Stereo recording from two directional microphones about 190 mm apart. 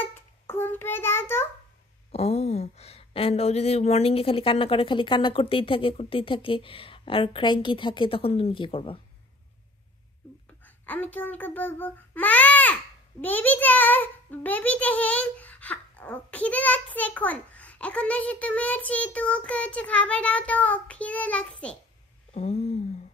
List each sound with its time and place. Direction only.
0.0 s child singing: 10° left (ahead or behind)
2.1 s speech: 35° left (ahead or behind)
10.9 s a child's voice: 10° left (ahead or behind)
22.3 s a sound: 35° left (ahead or behind)